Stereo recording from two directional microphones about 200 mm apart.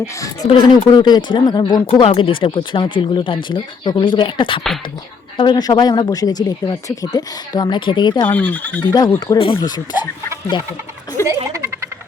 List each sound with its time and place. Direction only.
0.2 s speech: 25° left (ahead or behind)
8.3 s speech: 10° left (ahead or behind)